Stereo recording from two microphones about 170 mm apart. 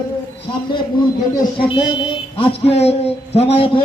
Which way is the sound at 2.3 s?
35° left (ahead or behind).